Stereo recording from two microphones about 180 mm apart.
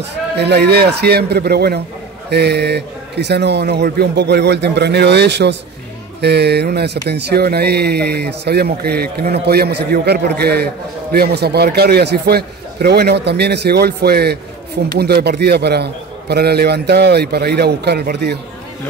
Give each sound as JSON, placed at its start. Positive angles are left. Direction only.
{"t": 0.4, "sound": "a man's voice", "side_deg": -65}